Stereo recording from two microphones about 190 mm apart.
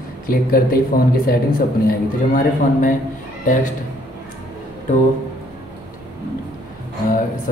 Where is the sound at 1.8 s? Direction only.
45° left (ahead or behind).